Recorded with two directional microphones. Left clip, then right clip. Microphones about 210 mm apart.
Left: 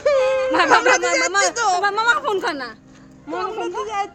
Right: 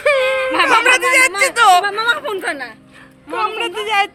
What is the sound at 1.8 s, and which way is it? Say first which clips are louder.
Speech: even; 55° left (ahead or behind).